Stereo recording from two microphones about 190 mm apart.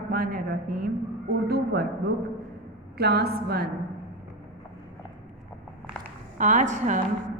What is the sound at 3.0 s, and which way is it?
Speech, 60° right (ahead or behind).